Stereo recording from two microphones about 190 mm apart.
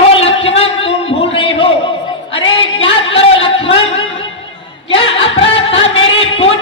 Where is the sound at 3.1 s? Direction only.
30° left (ahead or behind).